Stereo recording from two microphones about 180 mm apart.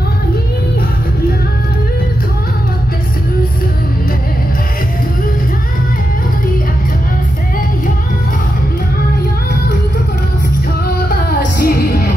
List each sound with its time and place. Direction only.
11.2 s music: 55° left (ahead or behind)